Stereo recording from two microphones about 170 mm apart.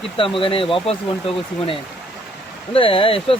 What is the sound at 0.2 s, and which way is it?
Speech, 30° left (ahead or behind).